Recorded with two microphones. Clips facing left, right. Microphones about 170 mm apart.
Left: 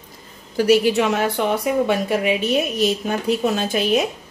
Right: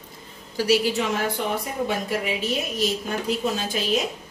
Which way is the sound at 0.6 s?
60° left (ahead or behind).